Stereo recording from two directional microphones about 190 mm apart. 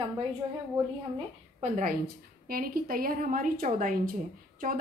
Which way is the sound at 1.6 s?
40° right (ahead or behind).